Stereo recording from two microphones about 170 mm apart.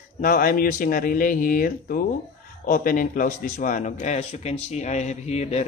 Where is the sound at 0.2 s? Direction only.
55° left (ahead or behind).